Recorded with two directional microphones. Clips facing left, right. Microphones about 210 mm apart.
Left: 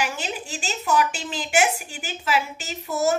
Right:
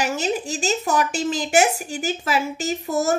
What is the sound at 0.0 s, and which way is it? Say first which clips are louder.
A woman's voice: right 6 dB; 45° right (ahead or behind).